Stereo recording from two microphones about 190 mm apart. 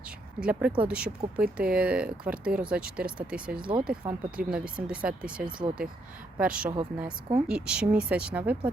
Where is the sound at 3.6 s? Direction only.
25° right (ahead or behind).